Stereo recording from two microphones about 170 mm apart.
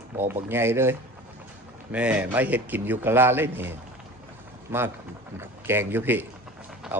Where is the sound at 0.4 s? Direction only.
15° right (ahead or behind).